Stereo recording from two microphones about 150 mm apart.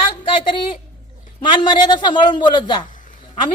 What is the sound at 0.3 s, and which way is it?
A woman's voice, 35° left (ahead or behind).